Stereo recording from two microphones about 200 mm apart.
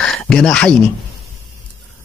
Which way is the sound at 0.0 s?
5° left (ahead or behind).